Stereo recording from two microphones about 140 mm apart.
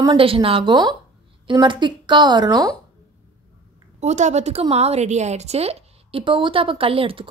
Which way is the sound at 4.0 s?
55° right (ahead or behind).